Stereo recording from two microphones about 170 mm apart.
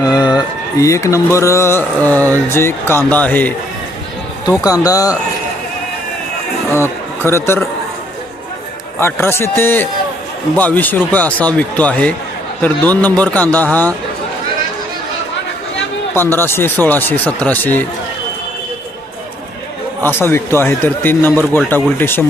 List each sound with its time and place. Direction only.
0.0 s a sound: 20° left (ahead or behind)
0.8 s speech: 15° left (ahead or behind)
4.4 s speech: 20° left (ahead or behind)
6.7 s speech: 15° left (ahead or behind)
9.0 s speech: 15° left (ahead or behind)
16.1 s speech: 15° left (ahead or behind)
20.1 s speech: 15° left (ahead or behind)